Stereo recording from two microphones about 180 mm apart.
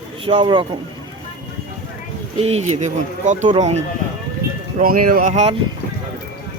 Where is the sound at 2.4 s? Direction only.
35° right (ahead or behind).